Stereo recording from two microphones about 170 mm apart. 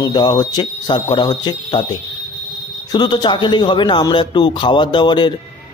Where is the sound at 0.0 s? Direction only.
25° left (ahead or behind).